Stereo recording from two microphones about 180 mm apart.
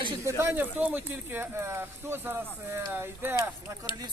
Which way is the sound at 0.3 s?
15° right (ahead or behind).